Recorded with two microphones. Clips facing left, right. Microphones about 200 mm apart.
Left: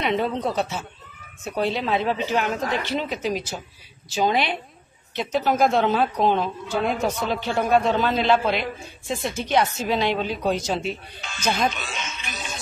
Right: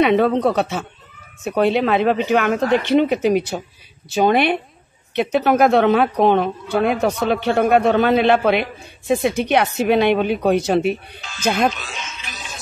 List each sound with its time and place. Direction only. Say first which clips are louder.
0.0 s a woman's voice: right 9 dB; 65° right (ahead or behind)
11.7 s speech: even; centre (ahead or behind)